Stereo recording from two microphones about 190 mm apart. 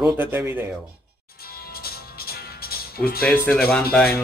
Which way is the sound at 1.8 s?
55° left (ahead or behind).